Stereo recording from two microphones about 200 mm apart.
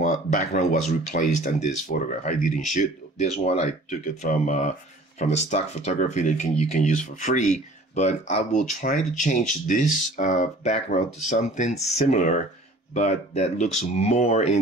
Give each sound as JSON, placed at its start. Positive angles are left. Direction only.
{"t": 0.0, "sound": "speech", "side_deg": 40}